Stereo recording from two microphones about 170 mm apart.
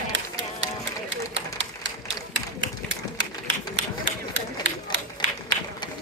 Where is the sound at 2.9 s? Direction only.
90° right.